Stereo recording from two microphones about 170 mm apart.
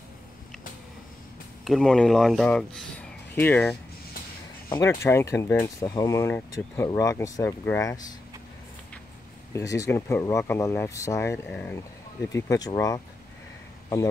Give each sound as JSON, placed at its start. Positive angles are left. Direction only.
{"t": 1.6, "sound": "speech", "side_deg": 0}
{"t": 9.5, "sound": "speech", "side_deg": 20}